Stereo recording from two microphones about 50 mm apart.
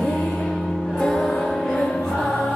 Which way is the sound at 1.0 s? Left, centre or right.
Centre.